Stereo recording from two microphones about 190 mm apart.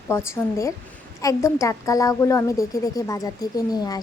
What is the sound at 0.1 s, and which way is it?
A woman's voice, 15° left (ahead or behind).